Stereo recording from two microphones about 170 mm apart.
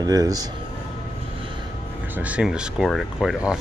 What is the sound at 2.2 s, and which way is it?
Speech, 5° right (ahead or behind).